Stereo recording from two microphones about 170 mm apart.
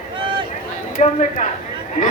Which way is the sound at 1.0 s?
45° left (ahead or behind).